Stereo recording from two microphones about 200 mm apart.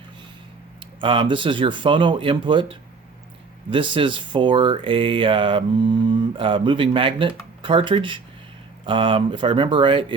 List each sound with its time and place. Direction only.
1.0 s speech: 25° right (ahead or behind)